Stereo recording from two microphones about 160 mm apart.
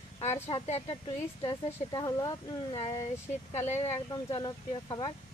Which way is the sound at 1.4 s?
30° left (ahead or behind).